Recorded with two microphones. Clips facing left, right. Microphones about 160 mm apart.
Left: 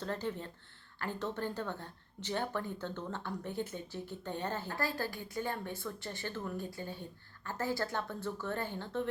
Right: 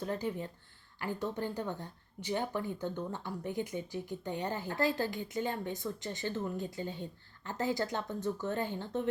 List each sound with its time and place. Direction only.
0.0 s speech: 15° right (ahead or behind)